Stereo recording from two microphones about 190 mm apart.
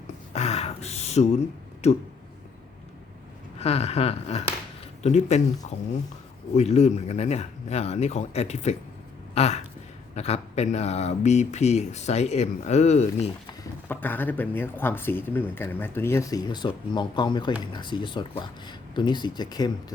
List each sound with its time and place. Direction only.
0.3 s a sound: 35° left (ahead or behind)
1.8 s speech: 35° left (ahead or behind)
3.6 s speech: 35° left (ahead or behind)
13.5 s speech: 10° left (ahead or behind)